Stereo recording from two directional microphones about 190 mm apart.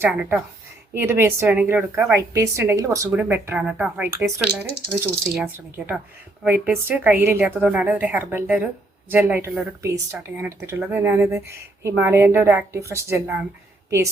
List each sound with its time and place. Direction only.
0.0 s a woman's voice: 10° right (ahead or behind)